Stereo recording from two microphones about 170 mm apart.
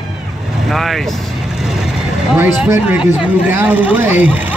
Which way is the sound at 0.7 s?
Centre (ahead or behind).